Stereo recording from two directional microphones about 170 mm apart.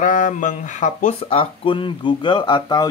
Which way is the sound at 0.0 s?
50° left (ahead or behind).